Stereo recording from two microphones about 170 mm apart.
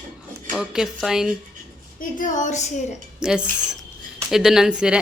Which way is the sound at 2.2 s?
45° left (ahead or behind).